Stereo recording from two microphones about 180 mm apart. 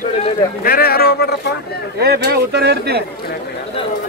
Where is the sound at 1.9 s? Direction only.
60° right (ahead or behind).